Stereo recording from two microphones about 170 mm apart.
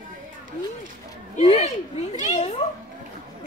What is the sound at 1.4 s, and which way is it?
A child's voice, 35° left (ahead or behind).